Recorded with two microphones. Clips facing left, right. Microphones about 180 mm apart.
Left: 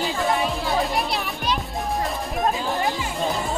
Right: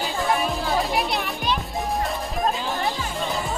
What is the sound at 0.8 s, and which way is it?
Music, centre (ahead or behind).